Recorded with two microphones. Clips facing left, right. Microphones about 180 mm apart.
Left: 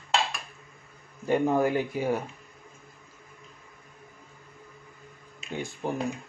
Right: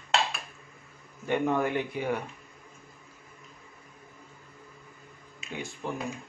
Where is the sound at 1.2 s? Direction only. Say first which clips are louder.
Left 3 dB; 35° left (ahead or behind).